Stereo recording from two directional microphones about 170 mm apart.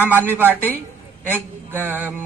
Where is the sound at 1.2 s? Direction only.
10° right (ahead or behind).